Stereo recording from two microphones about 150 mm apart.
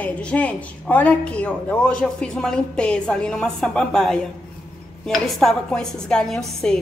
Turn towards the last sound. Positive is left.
turn(degrees=5)  # may be behind; listen again after turning